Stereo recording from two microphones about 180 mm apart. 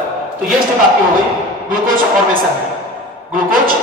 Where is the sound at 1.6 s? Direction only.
50° right (ahead or behind).